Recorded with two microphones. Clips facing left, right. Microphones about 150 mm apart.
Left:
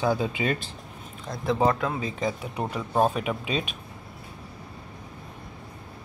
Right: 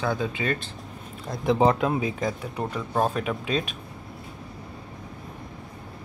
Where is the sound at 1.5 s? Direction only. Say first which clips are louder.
Right 3 dB; 20° right (ahead or behind).